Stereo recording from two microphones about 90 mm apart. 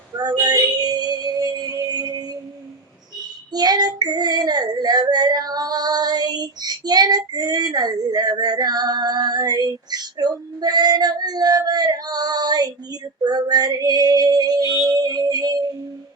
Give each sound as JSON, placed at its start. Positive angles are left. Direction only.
{"t": 0.2, "sound": "music", "side_deg": -50}
{"t": 3.5, "sound": "child singing", "side_deg": -50}